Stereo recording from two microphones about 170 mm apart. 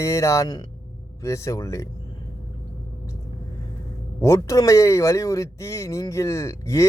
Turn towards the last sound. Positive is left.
turn(degrees=15)  # may be behind; listen again after turning